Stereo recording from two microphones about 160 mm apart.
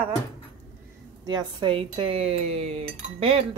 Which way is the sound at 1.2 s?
25° right (ahead or behind).